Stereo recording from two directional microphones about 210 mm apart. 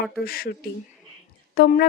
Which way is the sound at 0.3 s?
45° left (ahead or behind).